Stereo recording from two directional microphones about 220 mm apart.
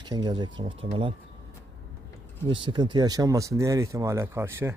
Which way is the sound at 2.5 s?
20° right (ahead or behind).